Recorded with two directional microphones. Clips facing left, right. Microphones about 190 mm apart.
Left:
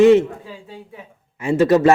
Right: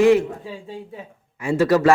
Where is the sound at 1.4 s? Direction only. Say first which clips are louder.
Left 3 dB; 25° left (ahead or behind).